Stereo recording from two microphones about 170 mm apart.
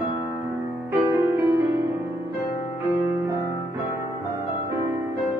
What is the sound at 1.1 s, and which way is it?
Music, 20° right (ahead or behind).